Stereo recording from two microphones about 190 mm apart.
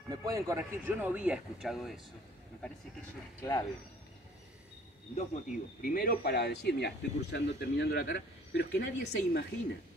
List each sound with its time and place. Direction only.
0.1 s speech: 15° right (ahead or behind); by 2.0 s centre (ahead or behind)
3.3 s speech: 15° left (ahead or behind)
5.1 s speech: 40° left (ahead or behind); by 9.5 s 60° left (ahead or behind)